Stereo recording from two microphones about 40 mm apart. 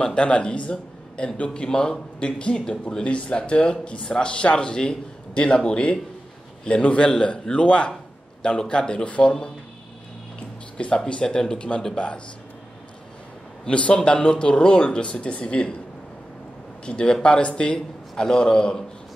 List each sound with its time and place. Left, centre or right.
0.0 s a man's voice: left
11.1 s a man's voice: left
13.7 s a man's voice: left
16.8 s a man's voice: left